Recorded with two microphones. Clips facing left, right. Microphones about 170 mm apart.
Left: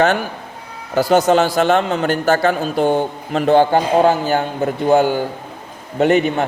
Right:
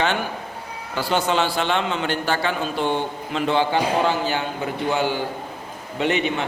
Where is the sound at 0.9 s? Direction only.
40° left (ahead or behind).